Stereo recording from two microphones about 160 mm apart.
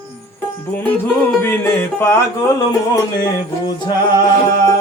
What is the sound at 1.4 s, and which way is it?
Music, 15° left (ahead or behind).